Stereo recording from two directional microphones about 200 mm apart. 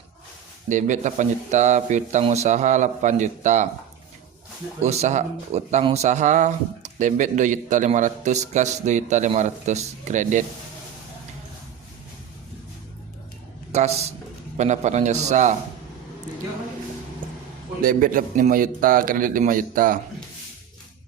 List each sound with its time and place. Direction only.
0.7 s speech: 40° right (ahead or behind)
4.8 s speech: 35° right (ahead or behind)
13.7 s speech: 35° right (ahead or behind)
17.8 s a man's voice: 45° right (ahead or behind)